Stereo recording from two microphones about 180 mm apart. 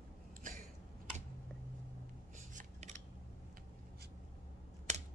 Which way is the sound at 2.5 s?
40° right (ahead or behind).